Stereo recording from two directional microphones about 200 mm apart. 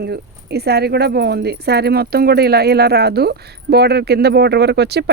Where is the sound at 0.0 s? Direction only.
55° right (ahead or behind).